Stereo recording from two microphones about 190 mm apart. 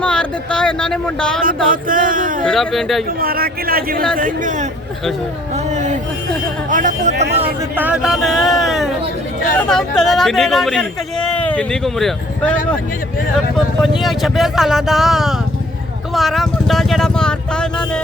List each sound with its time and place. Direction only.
0.0 s speech: 5° left (ahead or behind)
1.7 s a man's voice: 45° right (ahead or behind)
2.4 s speech: centre (ahead or behind)
3.2 s a man's voice: 50° right (ahead or behind)
5.7 s a sound: 35° right (ahead or behind)
6.7 s speech: 45° right (ahead or behind)
7.1 s a man's voice: 65° right (ahead or behind)
7.8 s speech: 5° right (ahead or behind)
14.0 s speech: centre (ahead or behind)